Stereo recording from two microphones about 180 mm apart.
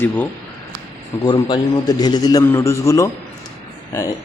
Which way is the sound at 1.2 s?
25° left (ahead or behind).